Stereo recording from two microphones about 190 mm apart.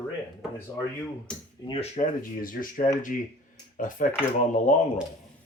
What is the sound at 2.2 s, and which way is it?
Speech, 45° left (ahead or behind).